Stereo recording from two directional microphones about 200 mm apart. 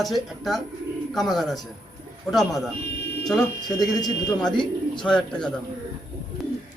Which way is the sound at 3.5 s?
20° left (ahead or behind).